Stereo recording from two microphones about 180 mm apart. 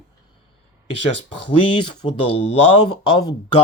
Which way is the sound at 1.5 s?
25° left (ahead or behind).